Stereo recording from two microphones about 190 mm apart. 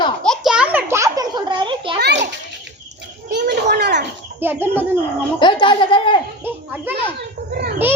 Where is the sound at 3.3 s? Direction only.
60° right (ahead or behind).